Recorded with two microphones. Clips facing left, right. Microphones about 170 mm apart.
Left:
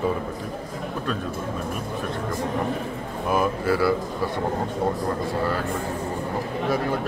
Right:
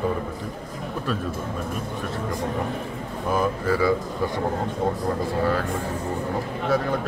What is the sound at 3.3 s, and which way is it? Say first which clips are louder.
Speech: left 1 dB; 10° left (ahead or behind).